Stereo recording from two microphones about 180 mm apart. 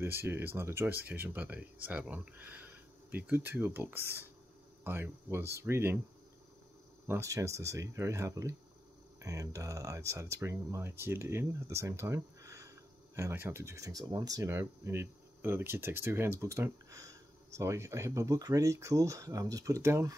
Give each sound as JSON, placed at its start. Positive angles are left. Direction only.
{"t": 0.0, "sound": "speech", "side_deg": -15}
{"t": 7.1, "sound": "speech", "side_deg": -15}